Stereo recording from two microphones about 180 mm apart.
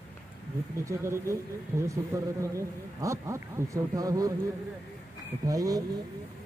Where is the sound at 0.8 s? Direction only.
15° right (ahead or behind).